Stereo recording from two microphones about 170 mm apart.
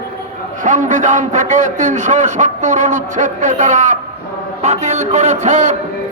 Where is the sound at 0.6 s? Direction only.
50° right (ahead or behind).